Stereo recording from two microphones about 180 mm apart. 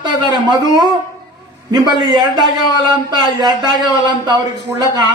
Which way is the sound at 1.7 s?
25° right (ahead or behind).